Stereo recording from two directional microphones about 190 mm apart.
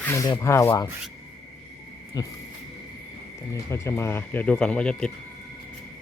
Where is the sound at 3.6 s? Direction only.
15° left (ahead or behind).